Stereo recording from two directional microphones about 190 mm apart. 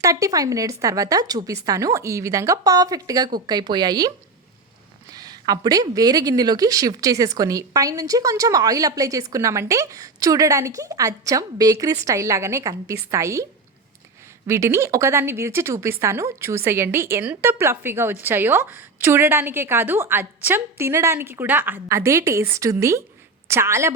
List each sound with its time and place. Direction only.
0.0 s a woman's voice: 15° right (ahead or behind)
5.1 s a woman's voice: 20° right (ahead or behind)
14.4 s a woman's voice: 15° right (ahead or behind)